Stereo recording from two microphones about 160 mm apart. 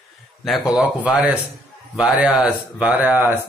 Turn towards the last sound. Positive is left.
turn(degrees=-10)  # may be behind; listen again after turning